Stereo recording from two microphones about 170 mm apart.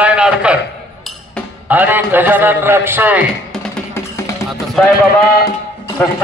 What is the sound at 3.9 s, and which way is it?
Music, 15° left (ahead or behind).